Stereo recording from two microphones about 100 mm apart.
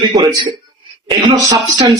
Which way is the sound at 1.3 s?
35° right (ahead or behind).